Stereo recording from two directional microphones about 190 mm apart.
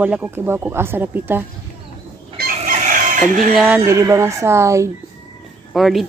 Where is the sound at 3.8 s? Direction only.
15° right (ahead or behind).